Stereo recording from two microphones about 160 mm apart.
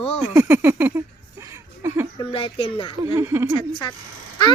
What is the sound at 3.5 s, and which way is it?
Speech, 30° left (ahead or behind).